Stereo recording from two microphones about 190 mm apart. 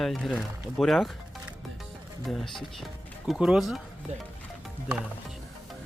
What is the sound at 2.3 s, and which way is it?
Speech, centre (ahead or behind).